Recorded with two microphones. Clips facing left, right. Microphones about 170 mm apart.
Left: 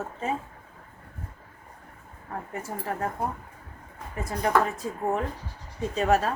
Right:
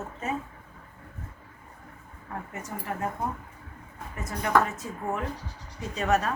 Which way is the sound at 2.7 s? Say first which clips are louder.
Even; 35° left (ahead or behind).